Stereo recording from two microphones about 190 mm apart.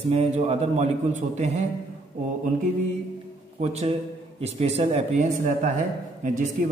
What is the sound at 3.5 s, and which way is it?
A man's voice, 35° right (ahead or behind).